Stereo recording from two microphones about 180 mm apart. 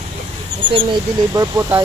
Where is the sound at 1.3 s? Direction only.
15° right (ahead or behind).